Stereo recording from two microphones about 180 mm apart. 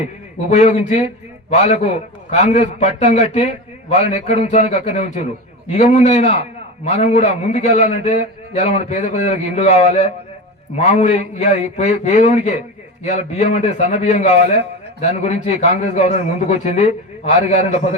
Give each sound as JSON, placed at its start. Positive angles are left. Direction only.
{"t": 0.5, "sound": "a man's voice", "side_deg": 40}